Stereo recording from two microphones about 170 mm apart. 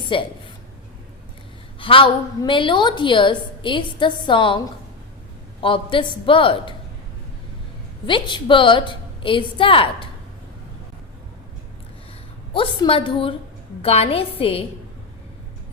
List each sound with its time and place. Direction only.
0.1 s a man's voice: 30° left (ahead or behind)
1.8 s a woman's voice: 30° left (ahead or behind)
5.5 s a man's voice: 30° left (ahead or behind)
8.0 s a woman's voice: 30° left (ahead or behind)
12.5 s a man's voice: 30° left (ahead or behind)